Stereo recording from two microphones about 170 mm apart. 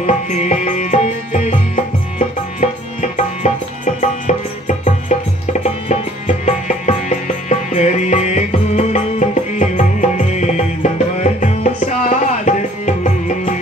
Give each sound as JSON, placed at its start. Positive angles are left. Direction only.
{"t": 0.0, "sound": "music", "side_deg": 45}